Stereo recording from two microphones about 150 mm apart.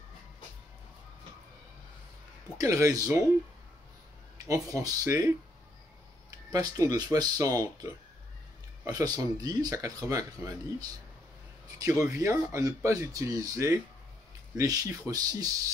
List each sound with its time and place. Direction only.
2.5 s speech: 20° right (ahead or behind)
4.5 s speech: 20° right (ahead or behind)
6.5 s speech: 25° right (ahead or behind)